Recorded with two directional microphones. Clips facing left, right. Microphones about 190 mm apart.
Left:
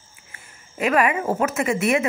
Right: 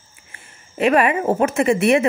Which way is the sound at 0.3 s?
30° right (ahead or behind).